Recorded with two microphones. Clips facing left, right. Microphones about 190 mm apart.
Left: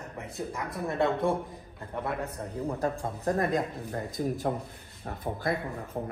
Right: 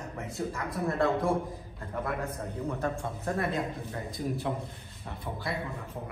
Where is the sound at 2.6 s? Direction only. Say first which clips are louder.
Left 2 dB; 35° left (ahead or behind).